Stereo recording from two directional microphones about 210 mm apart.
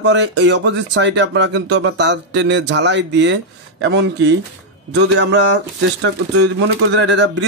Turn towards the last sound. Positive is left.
turn(degrees=-60)  # may be behind; listen again after turning